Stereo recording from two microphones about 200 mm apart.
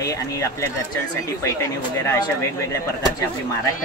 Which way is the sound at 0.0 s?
15° left (ahead or behind).